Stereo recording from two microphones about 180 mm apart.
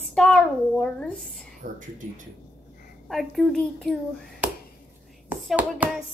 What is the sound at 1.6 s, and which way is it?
Speech, 45° right (ahead or behind).